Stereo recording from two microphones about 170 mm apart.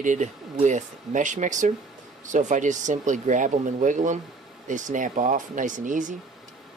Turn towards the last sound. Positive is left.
turn(degrees=-50)  # may be behind; listen again after turning